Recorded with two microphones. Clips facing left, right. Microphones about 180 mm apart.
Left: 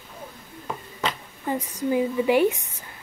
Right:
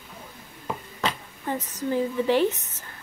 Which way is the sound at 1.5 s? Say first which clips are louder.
Left 3 dB; 10° left (ahead or behind).